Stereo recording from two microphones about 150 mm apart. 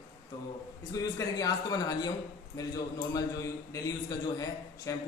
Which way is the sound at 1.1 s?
25° left (ahead or behind).